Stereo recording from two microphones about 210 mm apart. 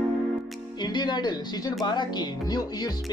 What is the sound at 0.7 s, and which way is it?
Speech, 20° left (ahead or behind).